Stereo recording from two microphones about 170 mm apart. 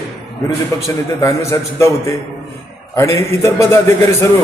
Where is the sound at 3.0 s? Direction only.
15° left (ahead or behind).